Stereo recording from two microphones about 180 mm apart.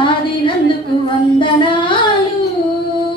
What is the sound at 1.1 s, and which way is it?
Singing, 25° left (ahead or behind).